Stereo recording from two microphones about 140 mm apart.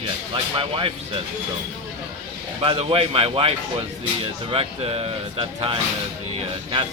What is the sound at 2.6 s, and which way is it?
Speech, 40° right (ahead or behind).